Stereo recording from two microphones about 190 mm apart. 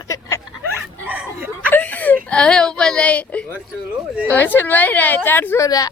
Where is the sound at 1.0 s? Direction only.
10° right (ahead or behind).